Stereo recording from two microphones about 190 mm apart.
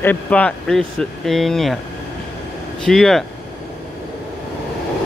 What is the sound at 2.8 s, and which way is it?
Speech, centre (ahead or behind).